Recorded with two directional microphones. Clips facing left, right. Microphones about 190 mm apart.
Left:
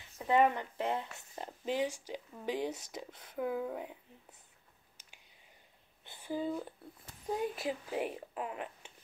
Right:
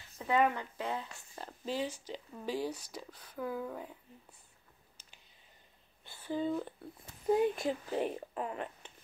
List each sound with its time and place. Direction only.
0.2 s speech: 20° left (ahead or behind)
6.0 s speech: 15° left (ahead or behind)